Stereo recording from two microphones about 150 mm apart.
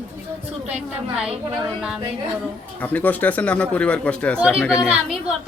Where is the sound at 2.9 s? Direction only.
10° left (ahead or behind).